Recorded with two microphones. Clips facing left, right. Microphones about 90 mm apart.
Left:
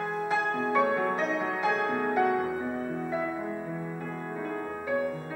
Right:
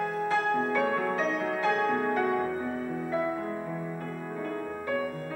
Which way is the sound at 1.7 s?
10° left (ahead or behind).